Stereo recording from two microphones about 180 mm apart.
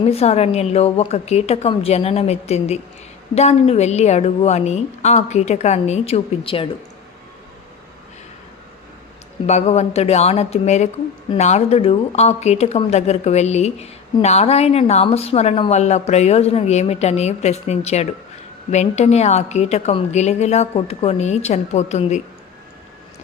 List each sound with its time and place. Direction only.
0.0 s speech: 35° left (ahead or behind)
9.5 s speech: 40° left (ahead or behind)